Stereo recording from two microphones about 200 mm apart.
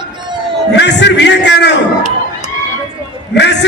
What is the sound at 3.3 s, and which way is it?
Speech, 60° left (ahead or behind).